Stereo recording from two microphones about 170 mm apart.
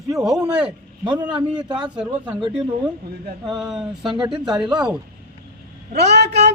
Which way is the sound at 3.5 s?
Centre (ahead or behind).